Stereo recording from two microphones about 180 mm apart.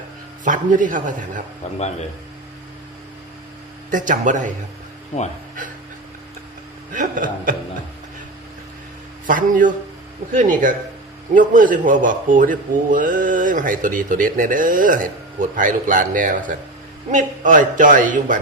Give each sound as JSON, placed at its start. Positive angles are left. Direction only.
{"t": 0.4, "sound": "speech", "side_deg": -45}
{"t": 3.9, "sound": "speech", "side_deg": -45}
{"t": 6.9, "sound": "speech", "side_deg": -45}
{"t": 9.2, "sound": "speech", "side_deg": -50}